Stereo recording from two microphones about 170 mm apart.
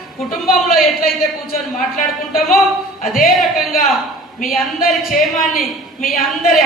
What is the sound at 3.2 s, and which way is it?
Speech, 60° left (ahead or behind).